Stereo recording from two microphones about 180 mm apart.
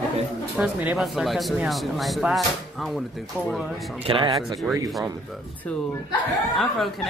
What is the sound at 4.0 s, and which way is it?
Speech, 30° right (ahead or behind).